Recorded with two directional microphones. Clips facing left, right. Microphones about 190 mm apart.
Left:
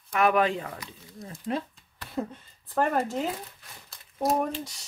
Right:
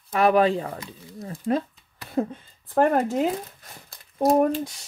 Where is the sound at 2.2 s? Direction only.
60° right (ahead or behind).